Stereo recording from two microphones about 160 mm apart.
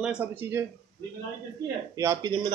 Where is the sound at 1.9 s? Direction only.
20° right (ahead or behind).